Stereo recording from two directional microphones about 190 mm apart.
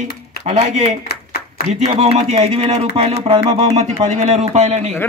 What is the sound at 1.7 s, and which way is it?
A man's voice, 35° right (ahead or behind).